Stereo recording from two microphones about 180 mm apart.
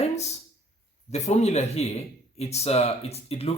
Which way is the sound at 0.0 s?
35° left (ahead or behind).